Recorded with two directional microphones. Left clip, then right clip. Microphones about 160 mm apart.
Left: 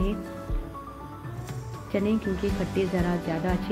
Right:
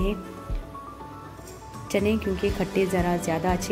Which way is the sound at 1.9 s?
20° right (ahead or behind).